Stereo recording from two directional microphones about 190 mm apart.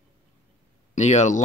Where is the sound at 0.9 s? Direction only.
35° left (ahead or behind).